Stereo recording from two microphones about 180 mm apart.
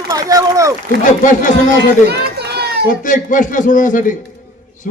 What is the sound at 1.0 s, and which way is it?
Speech, 45° left (ahead or behind).